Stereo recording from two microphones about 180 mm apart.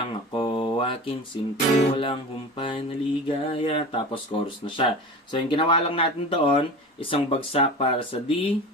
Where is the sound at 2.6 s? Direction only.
30° left (ahead or behind).